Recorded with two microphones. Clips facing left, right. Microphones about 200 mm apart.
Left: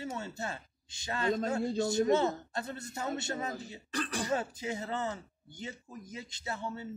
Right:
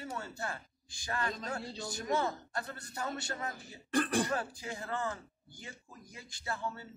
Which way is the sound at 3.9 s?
55° right (ahead or behind).